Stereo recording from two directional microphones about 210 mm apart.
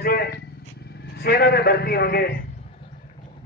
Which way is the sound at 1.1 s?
50° left (ahead or behind).